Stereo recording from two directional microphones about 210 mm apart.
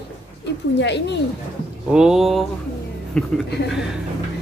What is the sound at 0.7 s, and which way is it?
Speech, 55° left (ahead or behind).